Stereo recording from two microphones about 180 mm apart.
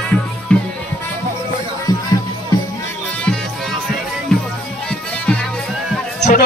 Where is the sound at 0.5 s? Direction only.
5° left (ahead or behind).